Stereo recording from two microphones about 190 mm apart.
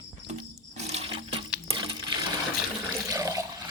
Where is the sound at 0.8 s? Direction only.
30° right (ahead or behind).